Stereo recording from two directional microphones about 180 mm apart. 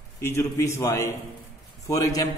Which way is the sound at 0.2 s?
15° left (ahead or behind).